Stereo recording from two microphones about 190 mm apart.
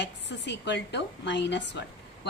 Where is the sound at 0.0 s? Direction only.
65° left (ahead or behind).